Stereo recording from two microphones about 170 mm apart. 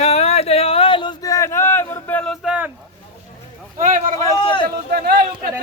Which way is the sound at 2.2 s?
5° left (ahead or behind).